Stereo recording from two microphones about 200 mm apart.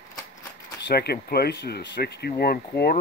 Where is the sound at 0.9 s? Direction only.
50° left (ahead or behind).